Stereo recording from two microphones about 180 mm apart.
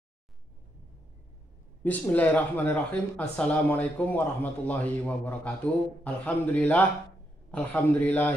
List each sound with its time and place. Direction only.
1.8 s speech: 10° left (ahead or behind)